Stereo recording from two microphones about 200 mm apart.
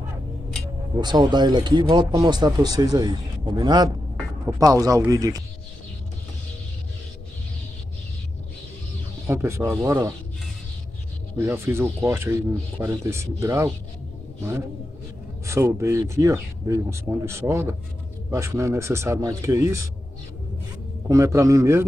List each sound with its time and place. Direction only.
1.0 s speech: 20° right (ahead or behind)
9.3 s speech: 15° right (ahead or behind)
11.3 s speech: 15° right (ahead or behind)
15.4 s speech: 15° right (ahead or behind)
21.1 s speech: 15° right (ahead or behind)